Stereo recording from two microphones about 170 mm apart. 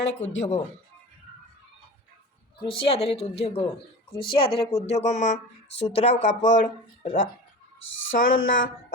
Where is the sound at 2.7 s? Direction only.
30° left (ahead or behind).